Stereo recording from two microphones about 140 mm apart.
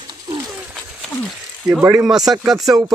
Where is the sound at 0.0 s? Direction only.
35° right (ahead or behind).